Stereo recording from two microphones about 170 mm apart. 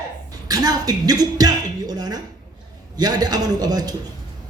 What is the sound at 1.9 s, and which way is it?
Dishes, 25° right (ahead or behind).